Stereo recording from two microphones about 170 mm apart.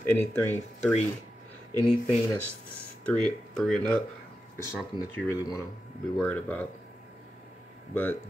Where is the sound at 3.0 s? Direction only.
5° left (ahead or behind).